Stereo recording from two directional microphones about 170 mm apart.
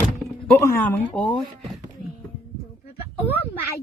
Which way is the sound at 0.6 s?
15° left (ahead or behind).